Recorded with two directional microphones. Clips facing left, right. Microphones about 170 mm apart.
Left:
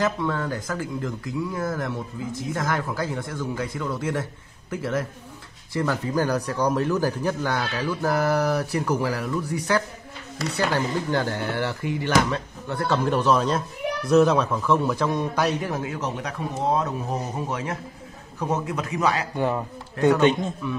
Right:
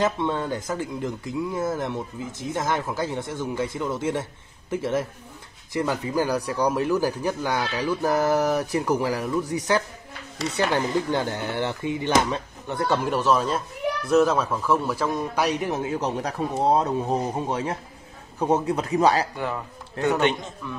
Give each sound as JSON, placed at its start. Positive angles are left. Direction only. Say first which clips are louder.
{"t": 0.0, "sound": "speech", "louder": "right 1 dB", "side_deg": -25}
{"t": 13.0, "sound": "speech", "louder": "left 4 dB", "side_deg": -5}
{"t": 19.3, "sound": "speech", "louder": "left 5 dB", "side_deg": 20}
{"t": 20.1, "sound": "speech", "louder": "left 4 dB", "side_deg": -20}